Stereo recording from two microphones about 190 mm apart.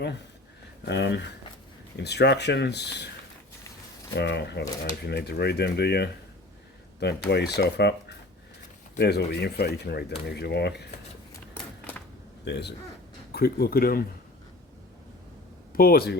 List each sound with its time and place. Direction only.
0.9 s speech: 65° left (ahead or behind)
4.1 s speech: 65° left (ahead or behind)
9.0 s speech: 60° left (ahead or behind)
11.5 s typewriter: 10° left (ahead or behind)
12.5 s speech: 60° left (ahead or behind)
15.7 s speech: 50° left (ahead or behind)